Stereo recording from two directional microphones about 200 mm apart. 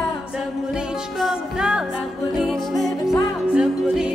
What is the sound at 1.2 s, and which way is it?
Music, 5° right (ahead or behind).